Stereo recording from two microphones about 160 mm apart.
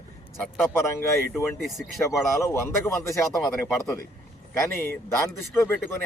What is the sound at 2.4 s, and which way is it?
Speech, 15° left (ahead or behind).